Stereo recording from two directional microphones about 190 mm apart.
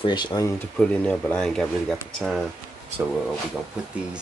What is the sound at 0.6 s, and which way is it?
Speech, 5° left (ahead or behind).